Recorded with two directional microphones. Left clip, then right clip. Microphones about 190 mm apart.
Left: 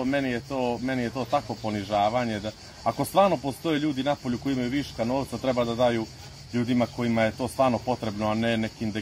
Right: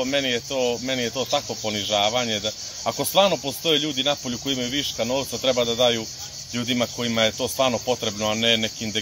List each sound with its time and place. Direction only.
0.0 s speech: 15° right (ahead or behind)
2.8 s speech: 20° right (ahead or behind)
3.2 s speech: 10° right (ahead or behind)